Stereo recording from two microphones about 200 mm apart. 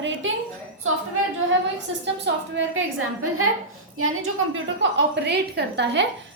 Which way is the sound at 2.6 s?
70° right (ahead or behind).